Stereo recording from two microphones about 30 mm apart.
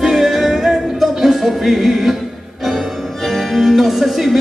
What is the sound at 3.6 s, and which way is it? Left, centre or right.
Music, centre.